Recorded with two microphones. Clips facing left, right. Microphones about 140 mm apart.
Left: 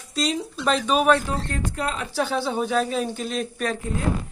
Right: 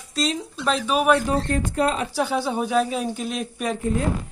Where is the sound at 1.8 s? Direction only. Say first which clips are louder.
Right 7 dB; 25° right (ahead or behind).